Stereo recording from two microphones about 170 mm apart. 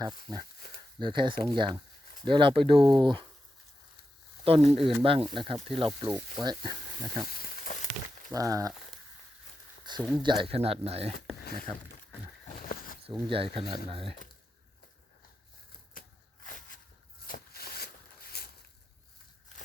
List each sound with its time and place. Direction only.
0.0 s speech: 25° right (ahead or behind)
4.4 s speech: 35° right (ahead or behind)
7.3 s frying: 60° left (ahead or behind)
8.3 s speech: 20° right (ahead or behind)
10.0 s speech: centre (ahead or behind)
10.2 s speech: 30° right (ahead or behind)
11.3 s a sound: 65° left (ahead or behind)
12.5 s a sound: 55° left (ahead or behind)
13.2 s speech: 30° right (ahead or behind)
16.6 s a sound: 50° left (ahead or behind)